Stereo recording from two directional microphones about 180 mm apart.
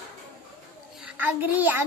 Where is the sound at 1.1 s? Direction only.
10° right (ahead or behind).